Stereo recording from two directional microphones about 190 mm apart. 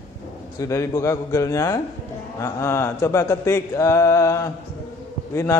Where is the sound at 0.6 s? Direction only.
15° left (ahead or behind).